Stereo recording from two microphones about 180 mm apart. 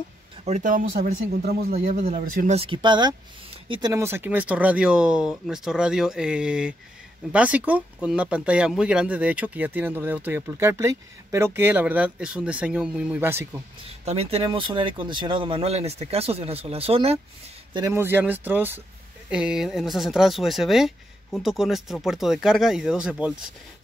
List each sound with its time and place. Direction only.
0.5 s speech: 45° right (ahead or behind); by 3.9 s 30° right (ahead or behind)
3.9 s speech: 15° right (ahead or behind)
14.0 s speech: 35° right (ahead or behind)
17.7 s speech: 15° right (ahead or behind)